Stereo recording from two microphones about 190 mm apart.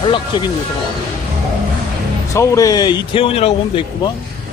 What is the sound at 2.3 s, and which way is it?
Speech, 15° left (ahead or behind).